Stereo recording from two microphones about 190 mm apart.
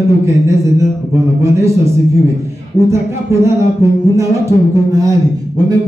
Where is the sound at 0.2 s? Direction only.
15° right (ahead or behind).